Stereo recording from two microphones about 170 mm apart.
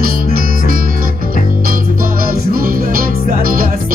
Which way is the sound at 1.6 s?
60° right (ahead or behind).